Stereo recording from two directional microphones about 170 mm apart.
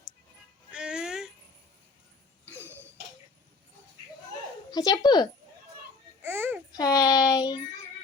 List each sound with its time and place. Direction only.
0.7 s music: 5° right (ahead or behind)
2.6 s a sound: 15° right (ahead or behind)
4.7 s speech: 25° left (ahead or behind)
6.2 s babbling: 15° right (ahead or behind)
6.7 s child singing: 20° left (ahead or behind)